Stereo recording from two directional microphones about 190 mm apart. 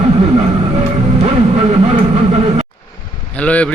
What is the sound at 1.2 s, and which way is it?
Vehicle, 35° right (ahead or behind).